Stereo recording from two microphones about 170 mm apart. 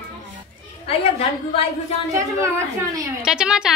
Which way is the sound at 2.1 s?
15° right (ahead or behind).